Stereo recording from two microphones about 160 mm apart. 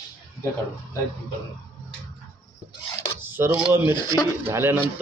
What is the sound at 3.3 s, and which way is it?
Speech, 15° right (ahead or behind).